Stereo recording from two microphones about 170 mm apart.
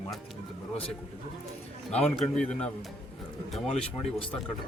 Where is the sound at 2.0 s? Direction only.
5° left (ahead or behind).